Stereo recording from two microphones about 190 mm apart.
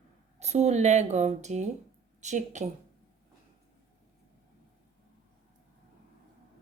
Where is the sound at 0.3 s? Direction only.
35° right (ahead or behind).